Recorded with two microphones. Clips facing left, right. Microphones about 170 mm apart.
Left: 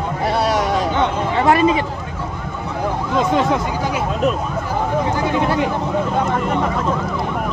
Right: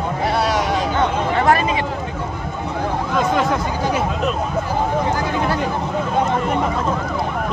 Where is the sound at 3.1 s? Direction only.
25° left (ahead or behind).